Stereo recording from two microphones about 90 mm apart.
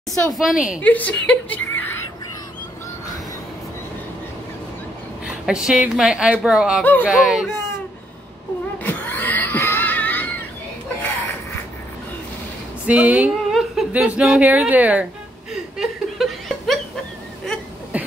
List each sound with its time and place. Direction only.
0.4 s a woman's voice: 10° right (ahead or behind)
0.8 s a woman's voice: 15° left (ahead or behind)
5.2 s a woman's voice: 10° right (ahead or behind)
6.8 s speech: 20° left (ahead or behind)
7.1 s a woman's voice: 10° right (ahead or behind)
8.7 s screaming: 20° left (ahead or behind)
12.8 s a woman's voice: 15° right (ahead or behind)
13.5 s a sound: centre (ahead or behind)
13.9 s a woman's voice: 10° right (ahead or behind)
15.5 s chuckle: 5° right (ahead or behind)
17.9 s beatboxing: 15° right (ahead or behind)